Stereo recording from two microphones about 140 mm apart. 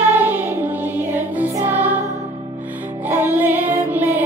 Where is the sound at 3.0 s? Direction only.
15° right (ahead or behind).